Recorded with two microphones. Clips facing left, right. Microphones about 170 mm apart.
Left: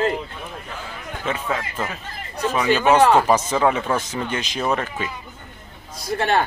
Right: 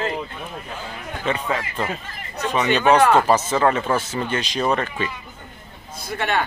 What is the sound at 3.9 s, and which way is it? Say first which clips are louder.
Speech: right 1 dB; 10° right (ahead or behind).